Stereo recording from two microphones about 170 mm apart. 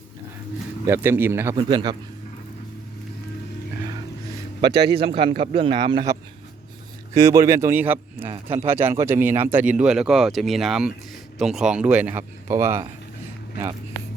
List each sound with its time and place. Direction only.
0.9 s a man's voice: 15° right (ahead or behind)
1.5 s a man's voice: 25° right (ahead or behind)
4.9 s a man's voice: 30° right (ahead or behind); by 12.8 s 15° right (ahead or behind)